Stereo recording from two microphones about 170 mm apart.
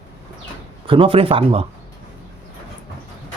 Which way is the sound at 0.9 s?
30° right (ahead or behind).